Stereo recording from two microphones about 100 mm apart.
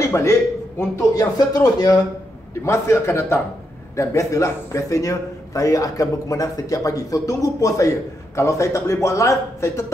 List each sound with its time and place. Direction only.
0.1 s a man's voice: 25° left (ahead or behind)
1.5 s a man's voice: 40° left (ahead or behind)
2.6 s a man's voice: 30° left (ahead or behind)